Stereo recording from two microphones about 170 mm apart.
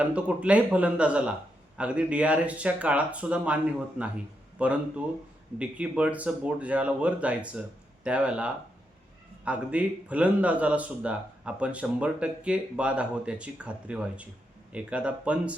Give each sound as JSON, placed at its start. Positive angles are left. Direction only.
{"t": 0.0, "sound": "speech", "side_deg": -5}